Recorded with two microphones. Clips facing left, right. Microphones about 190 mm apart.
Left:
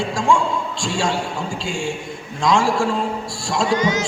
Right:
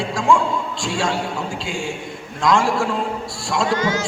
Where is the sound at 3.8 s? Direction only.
20° left (ahead or behind).